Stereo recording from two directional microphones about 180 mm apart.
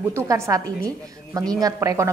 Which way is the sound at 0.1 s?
20° right (ahead or behind).